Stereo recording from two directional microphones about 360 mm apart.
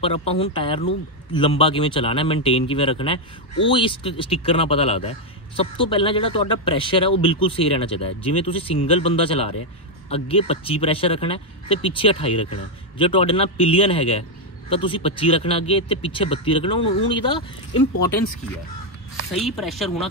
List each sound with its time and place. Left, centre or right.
0.0 s speech: centre
19.3 s speech: centre